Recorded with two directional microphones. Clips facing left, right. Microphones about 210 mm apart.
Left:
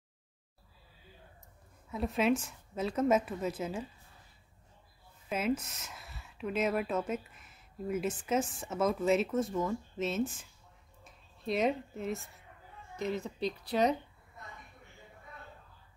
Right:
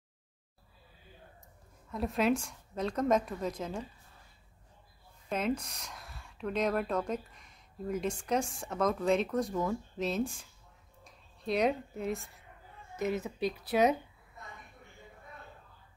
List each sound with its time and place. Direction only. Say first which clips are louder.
1.9 s speech: even; centre (ahead or behind)
5.3 s speech: even; 5° left (ahead or behind)